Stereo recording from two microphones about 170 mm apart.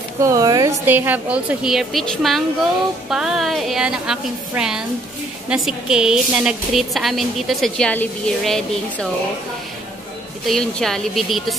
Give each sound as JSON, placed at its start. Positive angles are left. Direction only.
{"t": 0.2, "sound": "a woman's voice", "side_deg": -20}
{"t": 10.4, "sound": "a woman's voice", "side_deg": 0}